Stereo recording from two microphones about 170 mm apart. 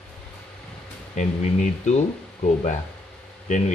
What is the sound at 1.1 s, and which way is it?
Speech, 45° left (ahead or behind).